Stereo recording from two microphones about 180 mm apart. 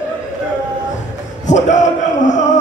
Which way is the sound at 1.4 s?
45° left (ahead or behind).